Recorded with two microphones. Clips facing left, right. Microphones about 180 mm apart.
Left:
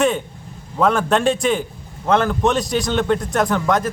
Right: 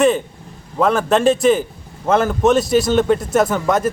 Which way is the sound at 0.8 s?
Centre (ahead or behind).